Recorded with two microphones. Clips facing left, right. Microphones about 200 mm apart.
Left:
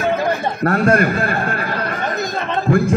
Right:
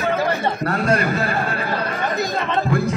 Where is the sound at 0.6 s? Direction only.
55° left (ahead or behind).